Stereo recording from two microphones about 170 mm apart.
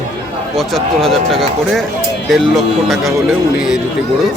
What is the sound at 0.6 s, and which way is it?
Speech, centre (ahead or behind).